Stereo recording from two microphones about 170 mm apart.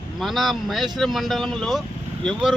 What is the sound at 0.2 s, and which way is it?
Speech, centre (ahead or behind).